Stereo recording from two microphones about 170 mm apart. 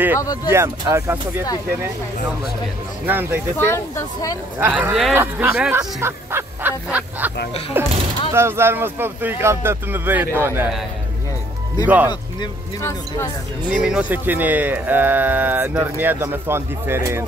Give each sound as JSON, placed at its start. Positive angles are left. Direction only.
{"t": 0.5, "sound": "speech", "side_deg": -15}
{"t": 3.1, "sound": "speech", "side_deg": -10}
{"t": 3.5, "sound": "speech", "side_deg": 15}
{"t": 4.6, "sound": "speech", "side_deg": -10}
{"t": 11.8, "sound": "speech", "side_deg": -10}
{"t": 12.1, "sound": "speech", "side_deg": 20}
{"t": 13.7, "sound": "speech", "side_deg": -5}